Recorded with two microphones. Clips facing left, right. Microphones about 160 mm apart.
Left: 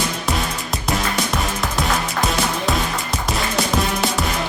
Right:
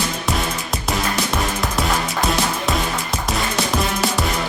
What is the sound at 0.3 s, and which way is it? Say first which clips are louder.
Music: even; centre (ahead or behind).